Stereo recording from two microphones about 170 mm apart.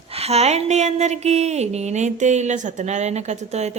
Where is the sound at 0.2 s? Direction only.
40° right (ahead or behind).